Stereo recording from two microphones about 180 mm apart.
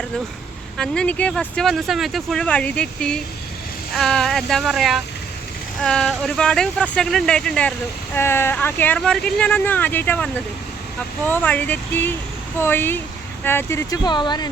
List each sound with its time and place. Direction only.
0.8 s speech: 5° left (ahead or behind)
11.3 s speech: 10° left (ahead or behind)